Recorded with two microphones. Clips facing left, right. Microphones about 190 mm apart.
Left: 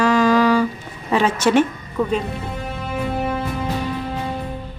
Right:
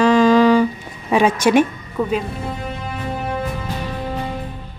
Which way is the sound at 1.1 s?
15° right (ahead or behind).